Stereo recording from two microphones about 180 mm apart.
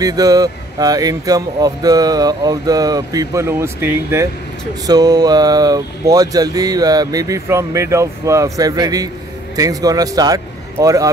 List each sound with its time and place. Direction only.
0.0 s a man's voice: 20° right (ahead or behind)